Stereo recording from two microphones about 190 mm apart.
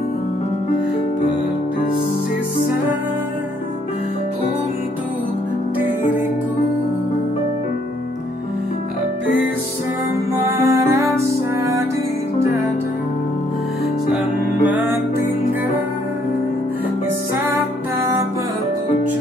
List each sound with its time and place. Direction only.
5.8 s music: 10° right (ahead or behind)
10.4 s music: 15° right (ahead or behind)
14.0 s music: 5° right (ahead or behind)